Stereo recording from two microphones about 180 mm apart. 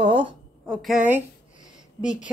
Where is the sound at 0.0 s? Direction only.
25° right (ahead or behind).